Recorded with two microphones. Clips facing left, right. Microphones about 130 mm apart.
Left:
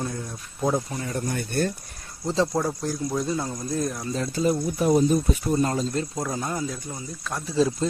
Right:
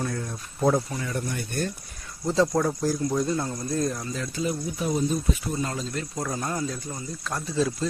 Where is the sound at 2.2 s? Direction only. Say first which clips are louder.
Right 1 dB; 25° left (ahead or behind).